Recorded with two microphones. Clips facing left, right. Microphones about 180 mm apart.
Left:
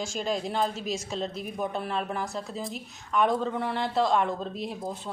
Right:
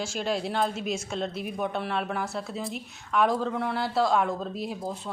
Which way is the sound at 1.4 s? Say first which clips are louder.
Right 1 dB; centre (ahead or behind).